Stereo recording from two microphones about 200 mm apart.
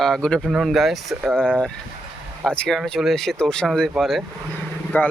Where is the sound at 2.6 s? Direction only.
Centre (ahead or behind).